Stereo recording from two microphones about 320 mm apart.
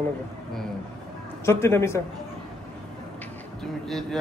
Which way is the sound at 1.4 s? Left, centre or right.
Centre.